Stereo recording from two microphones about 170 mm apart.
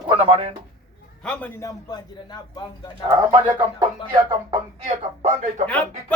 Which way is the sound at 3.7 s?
25° right (ahead or behind).